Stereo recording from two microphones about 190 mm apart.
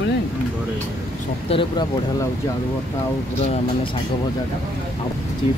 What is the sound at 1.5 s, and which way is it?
Speech, 25° left (ahead or behind).